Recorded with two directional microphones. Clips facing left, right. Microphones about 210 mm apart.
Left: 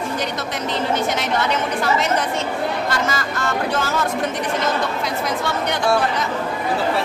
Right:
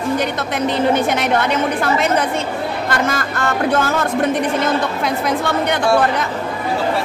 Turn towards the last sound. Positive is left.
turn(degrees=-55)  # may be behind; listen again after turning